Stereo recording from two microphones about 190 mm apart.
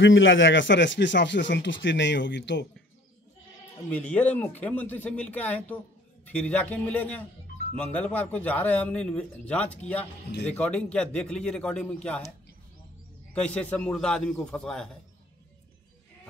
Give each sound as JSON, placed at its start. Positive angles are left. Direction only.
{"t": 0.0, "sound": "speech", "side_deg": 90}
{"t": 3.9, "sound": "speech", "side_deg": 5}
{"t": 13.3, "sound": "speech", "side_deg": 5}